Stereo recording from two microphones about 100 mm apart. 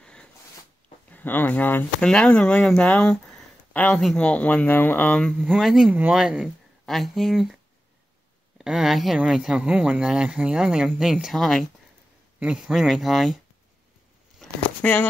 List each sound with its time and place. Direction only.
0.0 s a sound: 10° left (ahead or behind)
1.1 s speech: 20° left (ahead or behind)
2.0 s speech: 10° left (ahead or behind)
5.6 s speech: 5° right (ahead or behind)
5.9 s speech: 15° right (ahead or behind)
8.5 s speech: 5° right (ahead or behind)
12.4 s speech: 10° right (ahead or behind)
14.4 s a sound: 15° left (ahead or behind)